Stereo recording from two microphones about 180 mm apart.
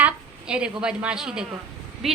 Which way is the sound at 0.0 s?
5° right (ahead or behind).